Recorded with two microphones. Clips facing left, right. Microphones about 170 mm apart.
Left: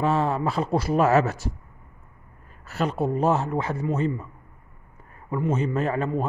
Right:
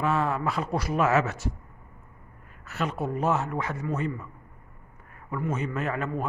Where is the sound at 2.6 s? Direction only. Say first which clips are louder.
Left 5 dB; 35° left (ahead or behind).